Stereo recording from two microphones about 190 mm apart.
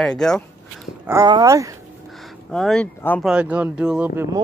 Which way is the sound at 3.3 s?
5° right (ahead or behind).